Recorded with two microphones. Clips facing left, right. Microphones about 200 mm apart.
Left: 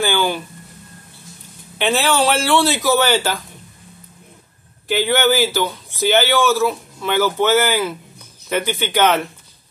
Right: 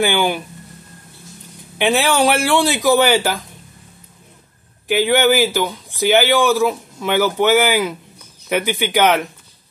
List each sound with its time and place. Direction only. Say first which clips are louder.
0.0 s speech: right 2 dB; 15° right (ahead or behind)
1.8 s speech: right 2 dB; 15° right (ahead or behind)
4.8 s speech: right 2 dB; 15° right (ahead or behind)